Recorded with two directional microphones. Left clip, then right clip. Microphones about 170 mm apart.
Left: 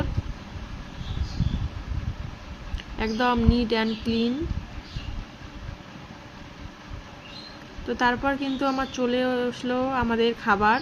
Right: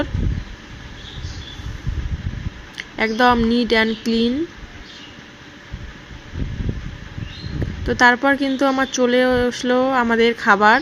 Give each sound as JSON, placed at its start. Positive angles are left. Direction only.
{"t": 2.7, "sound": "speech", "side_deg": -25}
{"t": 7.9, "sound": "speech", "side_deg": -25}